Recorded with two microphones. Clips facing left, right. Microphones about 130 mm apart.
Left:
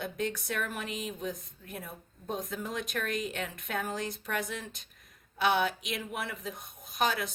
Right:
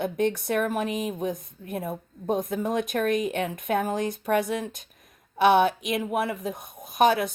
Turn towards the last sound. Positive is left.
turn(degrees=-55)  # may be behind; listen again after turning